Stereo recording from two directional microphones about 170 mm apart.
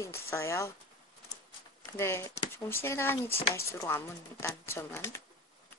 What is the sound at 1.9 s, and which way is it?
Speech, 15° left (ahead or behind).